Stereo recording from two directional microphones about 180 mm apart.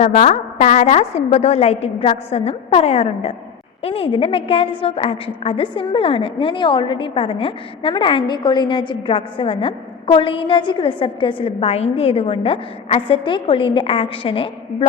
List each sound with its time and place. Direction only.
0.0 s a woman's voice: 40° left (ahead or behind)